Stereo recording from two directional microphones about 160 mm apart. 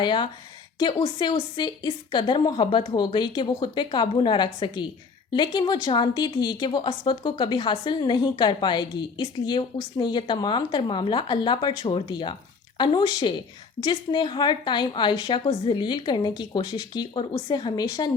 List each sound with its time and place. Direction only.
0.0 s a woman's voice: 30° left (ahead or behind)